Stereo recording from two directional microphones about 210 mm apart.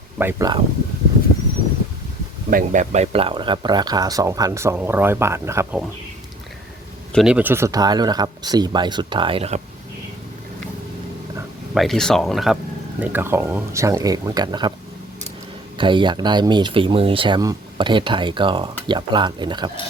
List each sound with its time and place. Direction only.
0.2 s speech: 15° right (ahead or behind)
2.5 s speech: 40° right (ahead or behind); by 5.8 s 10° right (ahead or behind)
7.1 s speech: centre (ahead or behind); by 9.6 s 25° right (ahead or behind)
11.7 s speech: centre (ahead or behind)
13.0 s speech: 10° right (ahead or behind)
15.8 s speech: 25° right (ahead or behind)